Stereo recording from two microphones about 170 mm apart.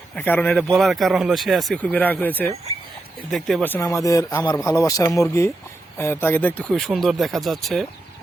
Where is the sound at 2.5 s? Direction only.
40° right (ahead or behind).